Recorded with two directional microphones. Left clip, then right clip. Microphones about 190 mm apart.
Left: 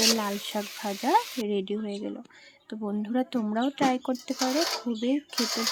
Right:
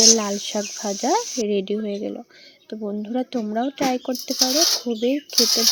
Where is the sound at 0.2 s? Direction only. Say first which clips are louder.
Right 6 dB; 15° right (ahead or behind).